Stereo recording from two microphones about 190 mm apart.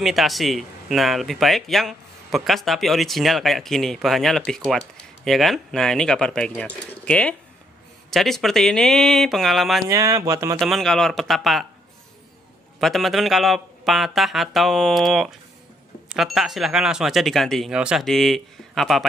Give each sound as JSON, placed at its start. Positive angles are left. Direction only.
{"t": 0.0, "sound": "speech", "side_deg": 0}
{"t": 9.8, "sound": "speech", "side_deg": -15}
{"t": 10.6, "sound": "speech", "side_deg": 0}
{"t": 12.8, "sound": "speech", "side_deg": 0}